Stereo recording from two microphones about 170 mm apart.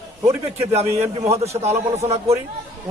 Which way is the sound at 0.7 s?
40° right (ahead or behind).